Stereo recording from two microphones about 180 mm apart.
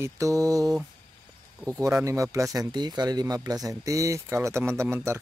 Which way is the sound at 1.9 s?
15° right (ahead or behind).